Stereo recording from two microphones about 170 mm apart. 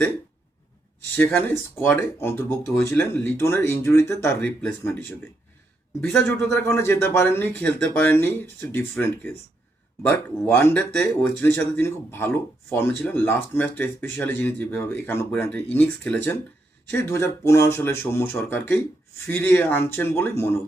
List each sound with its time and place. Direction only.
1.1 s speech: 10° left (ahead or behind)